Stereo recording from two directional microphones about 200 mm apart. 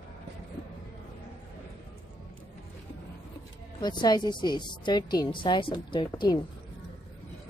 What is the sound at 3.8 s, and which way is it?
A woman's voice, 20° left (ahead or behind).